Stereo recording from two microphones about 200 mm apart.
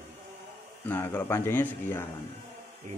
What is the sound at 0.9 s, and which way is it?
Speech, 10° left (ahead or behind).